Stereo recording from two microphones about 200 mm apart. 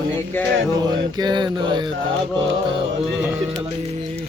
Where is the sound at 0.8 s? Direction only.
20° right (ahead or behind).